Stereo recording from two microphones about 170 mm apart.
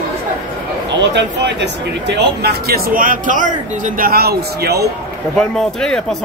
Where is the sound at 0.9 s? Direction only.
90° right.